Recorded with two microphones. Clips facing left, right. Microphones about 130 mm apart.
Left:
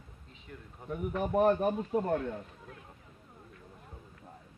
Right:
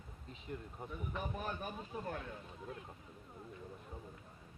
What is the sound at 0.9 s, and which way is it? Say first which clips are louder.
A man's voice: left 11 dB; 65° left (ahead or behind).